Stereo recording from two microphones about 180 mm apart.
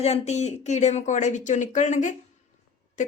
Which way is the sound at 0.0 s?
35° left (ahead or behind).